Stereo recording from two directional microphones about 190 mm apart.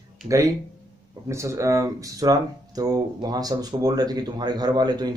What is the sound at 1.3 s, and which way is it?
Speech, 15° right (ahead or behind).